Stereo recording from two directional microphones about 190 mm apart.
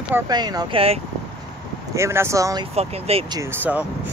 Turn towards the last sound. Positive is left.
turn(degrees=-10)  # may be behind; listen again after turning